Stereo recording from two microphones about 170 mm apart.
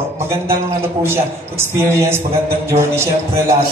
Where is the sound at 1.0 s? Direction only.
15° right (ahead or behind).